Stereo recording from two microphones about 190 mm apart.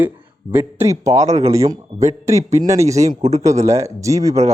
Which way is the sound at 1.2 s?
35° right (ahead or behind).